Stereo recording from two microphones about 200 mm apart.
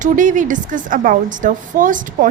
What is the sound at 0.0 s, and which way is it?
A woman's voice, 40° right (ahead or behind).